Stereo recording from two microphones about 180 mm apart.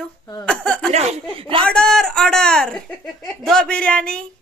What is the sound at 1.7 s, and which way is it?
A woman's voice, 5° left (ahead or behind).